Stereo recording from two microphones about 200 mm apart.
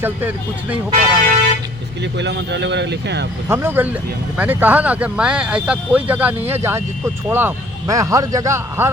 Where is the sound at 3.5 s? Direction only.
10° right (ahead or behind).